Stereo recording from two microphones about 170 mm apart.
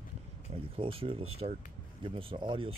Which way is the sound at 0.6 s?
30° right (ahead or behind).